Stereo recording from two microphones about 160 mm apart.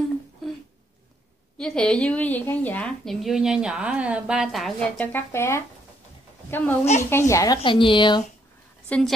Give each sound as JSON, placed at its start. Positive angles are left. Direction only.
{"t": 1.6, "sound": "a woman's voice", "side_deg": 5}
{"t": 6.8, "sound": "a woman's voice", "side_deg": 45}
{"t": 7.1, "sound": "a woman's voice", "side_deg": 15}
{"t": 7.6, "sound": "a woman's voice", "side_deg": 30}
{"t": 8.8, "sound": "a woman's voice", "side_deg": 10}